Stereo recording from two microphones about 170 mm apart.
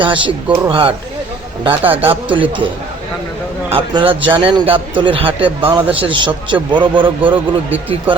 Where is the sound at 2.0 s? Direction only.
30° right (ahead or behind).